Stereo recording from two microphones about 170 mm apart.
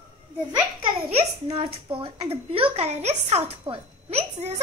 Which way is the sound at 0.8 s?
35° right (ahead or behind).